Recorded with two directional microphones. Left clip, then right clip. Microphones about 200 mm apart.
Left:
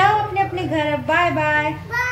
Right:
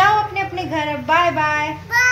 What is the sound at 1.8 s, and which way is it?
Child singing, 10° left (ahead or behind).